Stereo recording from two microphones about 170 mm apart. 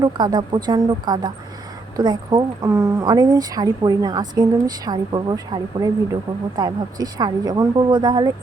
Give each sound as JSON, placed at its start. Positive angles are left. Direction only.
{"t": 0.0, "sound": "speech", "side_deg": -25}